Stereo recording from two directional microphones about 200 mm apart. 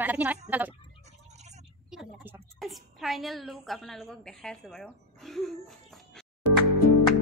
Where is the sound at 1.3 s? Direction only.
35° right (ahead or behind).